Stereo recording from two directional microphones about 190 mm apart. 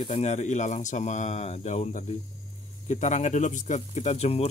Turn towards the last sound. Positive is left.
turn(degrees=35)  # may be behind; listen again after turning